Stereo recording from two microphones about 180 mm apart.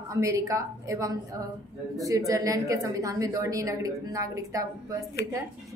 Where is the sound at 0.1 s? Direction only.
15° right (ahead or behind).